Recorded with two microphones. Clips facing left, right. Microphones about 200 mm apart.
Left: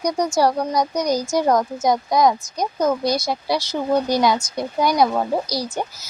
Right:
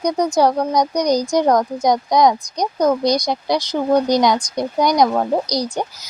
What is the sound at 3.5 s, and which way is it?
Speech, 10° left (ahead or behind).